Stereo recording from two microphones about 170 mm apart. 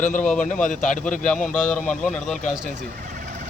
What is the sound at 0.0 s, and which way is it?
Speech, 50° left (ahead or behind).